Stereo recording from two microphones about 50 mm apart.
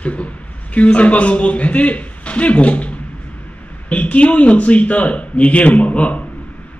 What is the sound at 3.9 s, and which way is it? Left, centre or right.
Speech, left.